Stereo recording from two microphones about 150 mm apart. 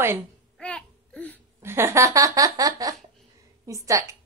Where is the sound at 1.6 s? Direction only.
15° right (ahead or behind).